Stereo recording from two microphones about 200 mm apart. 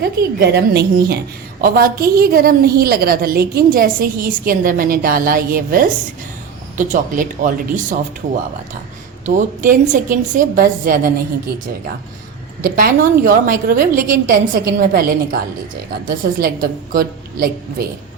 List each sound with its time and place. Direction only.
0.0 s a woman's voice: 50° right (ahead or behind)
9.2 s a woman's voice: 40° right (ahead or behind)
12.6 s a woman's voice: 45° right (ahead or behind)